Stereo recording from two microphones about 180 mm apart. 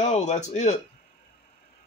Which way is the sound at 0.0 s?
40° left (ahead or behind).